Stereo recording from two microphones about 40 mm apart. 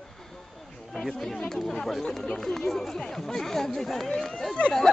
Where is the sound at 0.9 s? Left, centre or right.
Centre.